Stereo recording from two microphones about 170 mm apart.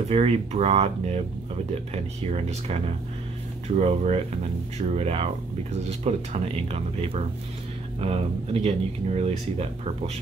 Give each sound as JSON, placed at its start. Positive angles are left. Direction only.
{"t": 0.1, "sound": "speech", "side_deg": -40}
{"t": 3.6, "sound": "speech", "side_deg": -40}